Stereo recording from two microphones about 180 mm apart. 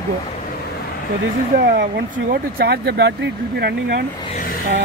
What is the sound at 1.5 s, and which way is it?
Speech, 55° right (ahead or behind).